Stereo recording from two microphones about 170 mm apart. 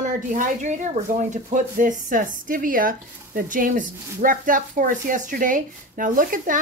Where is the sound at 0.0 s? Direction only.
50° right (ahead or behind).